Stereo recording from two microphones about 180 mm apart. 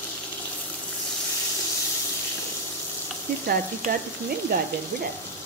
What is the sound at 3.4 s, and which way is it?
Frying, 55° right (ahead or behind).